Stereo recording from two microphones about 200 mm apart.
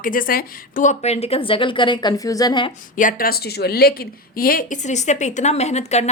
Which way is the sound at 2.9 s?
40° left (ahead or behind).